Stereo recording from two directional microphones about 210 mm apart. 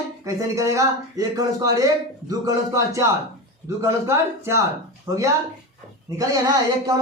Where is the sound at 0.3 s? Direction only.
15° right (ahead or behind).